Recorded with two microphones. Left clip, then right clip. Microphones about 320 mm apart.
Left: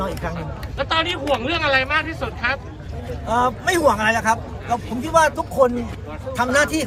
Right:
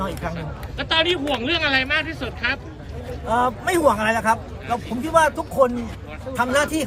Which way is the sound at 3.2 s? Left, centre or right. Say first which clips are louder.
Left 1 dB; centre.